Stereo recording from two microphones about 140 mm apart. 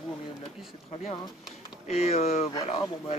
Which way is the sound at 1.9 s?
50° left (ahead or behind).